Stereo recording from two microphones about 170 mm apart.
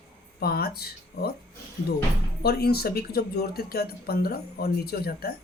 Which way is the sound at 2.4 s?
65° left (ahead or behind).